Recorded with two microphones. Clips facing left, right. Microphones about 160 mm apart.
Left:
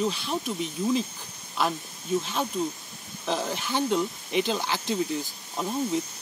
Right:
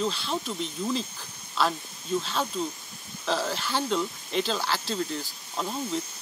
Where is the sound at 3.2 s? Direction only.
15° left (ahead or behind).